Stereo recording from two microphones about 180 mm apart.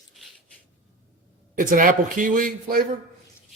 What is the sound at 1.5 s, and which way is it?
A man's voice, 50° right (ahead or behind).